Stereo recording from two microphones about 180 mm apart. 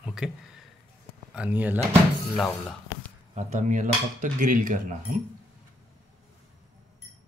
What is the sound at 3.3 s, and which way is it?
Speech, 40° right (ahead or behind).